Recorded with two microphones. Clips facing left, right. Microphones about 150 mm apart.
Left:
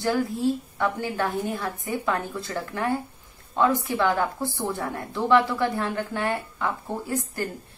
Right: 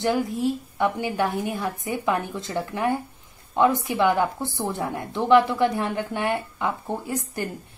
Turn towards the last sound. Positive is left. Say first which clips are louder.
# even
turn(degrees=-15)  # may be behind; listen again after turning